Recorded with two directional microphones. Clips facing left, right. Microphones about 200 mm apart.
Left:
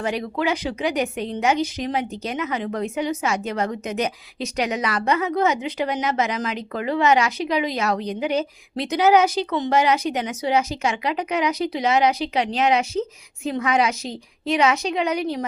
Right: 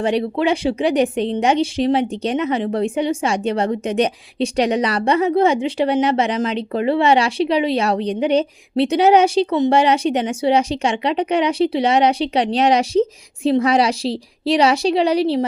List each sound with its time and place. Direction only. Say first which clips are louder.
0.0 s speech: right 6 dB; 30° right (ahead or behind)